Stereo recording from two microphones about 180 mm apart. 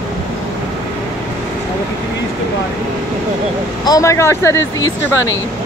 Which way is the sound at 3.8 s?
20° left (ahead or behind).